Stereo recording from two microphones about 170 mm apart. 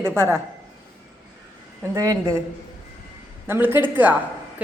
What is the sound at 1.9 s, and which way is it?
Speech, 20° right (ahead or behind).